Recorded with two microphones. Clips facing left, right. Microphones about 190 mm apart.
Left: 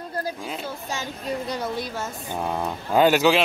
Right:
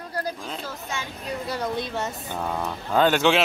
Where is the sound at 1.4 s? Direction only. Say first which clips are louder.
Even; 15° left (ahead or behind).